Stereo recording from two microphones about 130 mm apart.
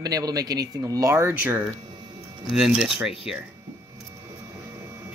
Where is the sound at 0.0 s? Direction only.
30° right (ahead or behind).